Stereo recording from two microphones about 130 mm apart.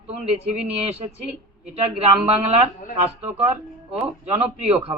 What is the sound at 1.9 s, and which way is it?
Speech, 55° right (ahead or behind).